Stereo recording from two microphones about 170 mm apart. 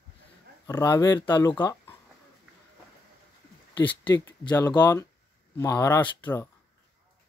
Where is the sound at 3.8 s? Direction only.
30° left (ahead or behind); by 6.5 s 15° left (ahead or behind).